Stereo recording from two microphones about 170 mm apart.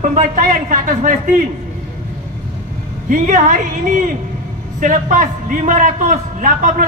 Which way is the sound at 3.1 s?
50° right (ahead or behind).